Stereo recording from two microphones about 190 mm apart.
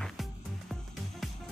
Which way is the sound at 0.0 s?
Centre (ahead or behind).